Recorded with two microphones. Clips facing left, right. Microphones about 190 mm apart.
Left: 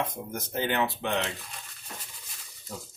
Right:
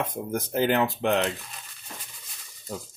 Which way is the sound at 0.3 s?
50° right (ahead or behind).